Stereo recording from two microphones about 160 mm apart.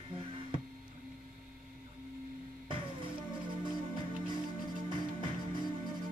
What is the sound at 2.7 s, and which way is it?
Music, 30° right (ahead or behind).